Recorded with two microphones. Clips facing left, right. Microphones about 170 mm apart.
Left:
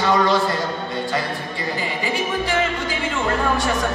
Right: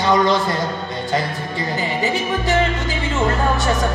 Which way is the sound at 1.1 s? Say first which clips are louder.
Right 3 dB; 20° right (ahead or behind).